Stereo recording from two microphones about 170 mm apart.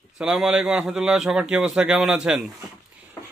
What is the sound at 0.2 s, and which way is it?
A man's voice, 5° right (ahead or behind).